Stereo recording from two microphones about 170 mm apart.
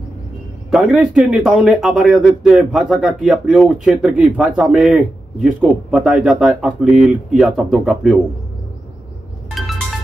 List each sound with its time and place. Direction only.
0.7 s a man's voice: centre (ahead or behind)